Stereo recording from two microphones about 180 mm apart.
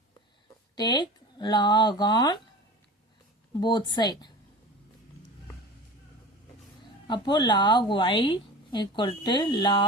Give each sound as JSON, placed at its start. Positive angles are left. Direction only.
{"t": 0.8, "sound": "a woman's voice", "side_deg": 25}
{"t": 3.6, "sound": "a woman's voice", "side_deg": 25}
{"t": 7.1, "sound": "a woman's voice", "side_deg": 25}